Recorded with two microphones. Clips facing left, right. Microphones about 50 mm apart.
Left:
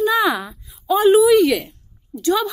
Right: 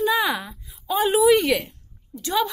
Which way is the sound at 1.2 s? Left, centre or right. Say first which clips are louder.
Left 4 dB; right.